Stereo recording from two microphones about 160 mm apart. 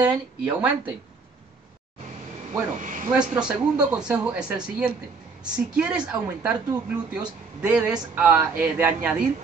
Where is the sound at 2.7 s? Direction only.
55° right (ahead or behind).